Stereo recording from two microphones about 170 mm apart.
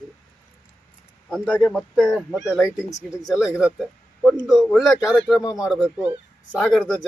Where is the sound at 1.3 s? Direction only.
Centre (ahead or behind).